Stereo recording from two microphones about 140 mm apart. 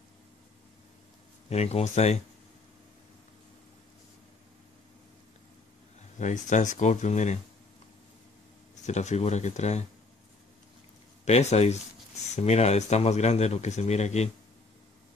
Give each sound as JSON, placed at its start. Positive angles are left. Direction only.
{"t": 1.5, "sound": "speech", "side_deg": 50}
{"t": 6.1, "sound": "speech", "side_deg": 60}
{"t": 8.8, "sound": "speech", "side_deg": 55}
{"t": 11.2, "sound": "speech", "side_deg": 50}